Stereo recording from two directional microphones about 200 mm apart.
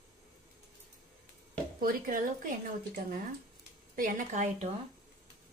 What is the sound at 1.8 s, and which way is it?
Speech, 45° right (ahead or behind).